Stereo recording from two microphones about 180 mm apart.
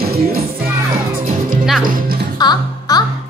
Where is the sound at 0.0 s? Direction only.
60° right (ahead or behind).